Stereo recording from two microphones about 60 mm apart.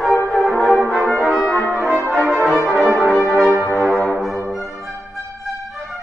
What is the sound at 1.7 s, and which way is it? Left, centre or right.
Brass instrument, right.